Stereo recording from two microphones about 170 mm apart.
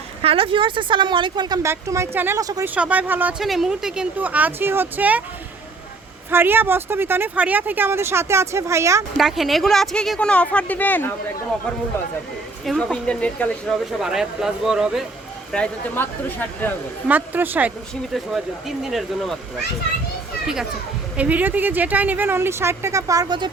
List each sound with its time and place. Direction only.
0.2 s speech: 35° right (ahead or behind)
2.6 s speech: 10° right (ahead or behind)
6.3 s speech: 10° right (ahead or behind)
9.1 s speech: centre (ahead or behind)
12.6 s speech: 5° left (ahead or behind)
17.1 s speech: 10° right (ahead or behind)
21.2 s speech: 10° right (ahead or behind)